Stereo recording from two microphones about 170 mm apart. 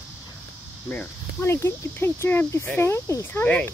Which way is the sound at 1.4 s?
15° left (ahead or behind).